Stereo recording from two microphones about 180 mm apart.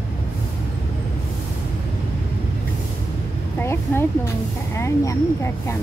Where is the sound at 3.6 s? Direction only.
15° left (ahead or behind).